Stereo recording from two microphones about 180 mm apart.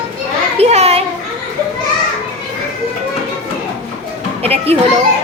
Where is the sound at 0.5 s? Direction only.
35° right (ahead or behind).